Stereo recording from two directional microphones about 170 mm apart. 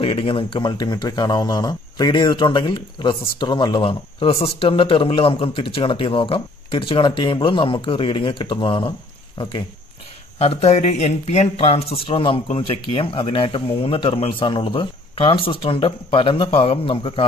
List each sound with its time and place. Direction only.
0.0 s speech: 35° left (ahead or behind)